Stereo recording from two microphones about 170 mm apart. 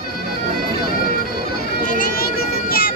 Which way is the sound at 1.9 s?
55° left (ahead or behind).